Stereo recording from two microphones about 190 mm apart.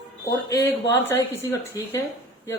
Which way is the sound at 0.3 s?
15° left (ahead or behind).